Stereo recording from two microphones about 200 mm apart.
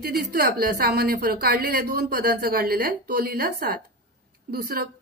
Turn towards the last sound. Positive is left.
turn(degrees=-50)  # may be behind; listen again after turning